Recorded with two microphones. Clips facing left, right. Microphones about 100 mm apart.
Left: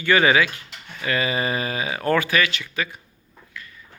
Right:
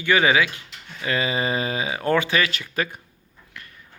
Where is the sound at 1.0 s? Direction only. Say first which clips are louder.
Even; 20° right (ahead or behind).